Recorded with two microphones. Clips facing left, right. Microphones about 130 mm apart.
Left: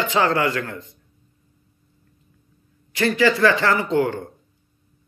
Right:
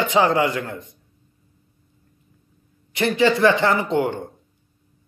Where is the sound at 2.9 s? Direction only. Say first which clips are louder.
Even; 25° right (ahead or behind).